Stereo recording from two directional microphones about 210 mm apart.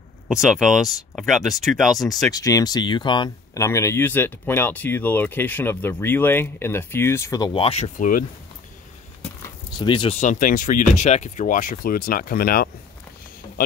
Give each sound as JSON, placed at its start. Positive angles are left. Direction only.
{"t": 0.3, "sound": "speech", "side_deg": 0}
{"t": 2.3, "sound": "speech", "side_deg": 15}
{"t": 9.8, "sound": "speech", "side_deg": 25}
{"t": 10.2, "sound": "speech", "side_deg": 40}